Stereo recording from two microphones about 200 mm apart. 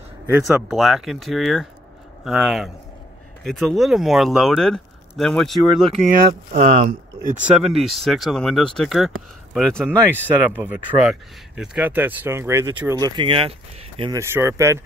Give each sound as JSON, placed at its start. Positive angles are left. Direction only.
{"t": 0.3, "sound": "speech", "side_deg": -5}
{"t": 6.5, "sound": "speech", "side_deg": -40}
{"t": 7.4, "sound": "speech", "side_deg": 0}
{"t": 14.1, "sound": "speech", "side_deg": -15}